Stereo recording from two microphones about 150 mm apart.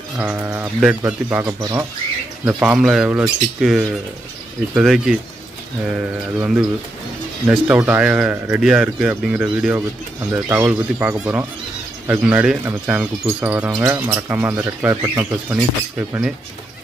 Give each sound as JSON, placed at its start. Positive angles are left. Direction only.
{"t": 0.2, "sound": "speech", "side_deg": -10}
{"t": 1.4, "sound": "speech", "side_deg": -25}
{"t": 2.4, "sound": "speech", "side_deg": -10}